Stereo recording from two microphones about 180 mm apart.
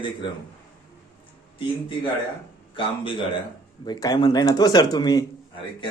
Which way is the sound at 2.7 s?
30° left (ahead or behind).